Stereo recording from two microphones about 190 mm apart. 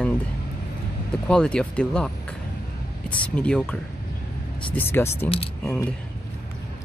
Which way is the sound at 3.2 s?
5° left (ahead or behind).